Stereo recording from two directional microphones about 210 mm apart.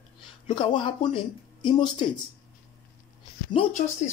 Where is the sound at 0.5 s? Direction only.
20° left (ahead or behind).